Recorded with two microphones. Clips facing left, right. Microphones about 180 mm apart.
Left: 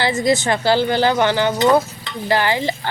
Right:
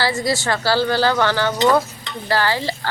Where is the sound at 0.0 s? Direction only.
20° left (ahead or behind).